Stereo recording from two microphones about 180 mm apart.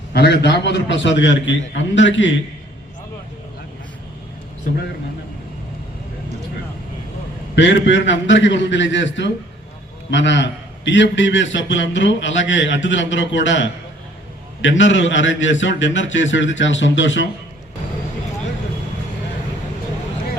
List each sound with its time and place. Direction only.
0.1 s a man's voice: 65° left (ahead or behind); by 2.3 s 90° left
7.5 s a man's voice: 80° left